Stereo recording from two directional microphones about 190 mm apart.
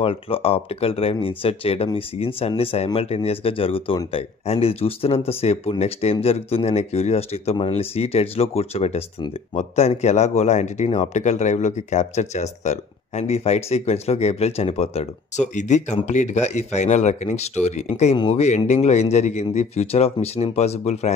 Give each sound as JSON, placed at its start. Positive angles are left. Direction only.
{"t": 0.0, "sound": "speech", "side_deg": 30}